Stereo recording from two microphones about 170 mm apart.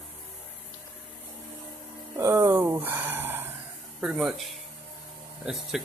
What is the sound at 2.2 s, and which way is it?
Speech, 15° right (ahead or behind).